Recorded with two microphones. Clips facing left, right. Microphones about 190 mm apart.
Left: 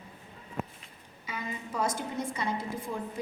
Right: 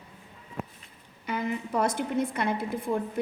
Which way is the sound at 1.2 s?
65° right (ahead or behind).